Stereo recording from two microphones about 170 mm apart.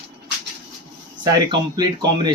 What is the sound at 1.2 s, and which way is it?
Speech, 25° right (ahead or behind).